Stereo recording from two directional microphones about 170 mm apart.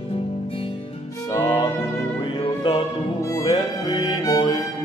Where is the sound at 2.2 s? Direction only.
25° left (ahead or behind).